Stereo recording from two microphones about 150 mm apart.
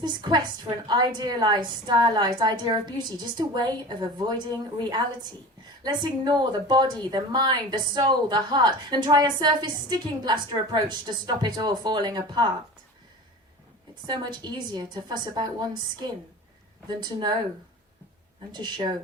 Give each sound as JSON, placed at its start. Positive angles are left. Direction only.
{"t": 0.0, "sound": "a woman's voice", "side_deg": -30}
{"t": 5.8, "sound": "a woman's voice", "side_deg": -30}
{"t": 14.1, "sound": "a woman's voice", "side_deg": -30}
{"t": 17.0, "sound": "a woman's voice", "side_deg": -30}
{"t": 18.5, "sound": "a woman's voice", "side_deg": -30}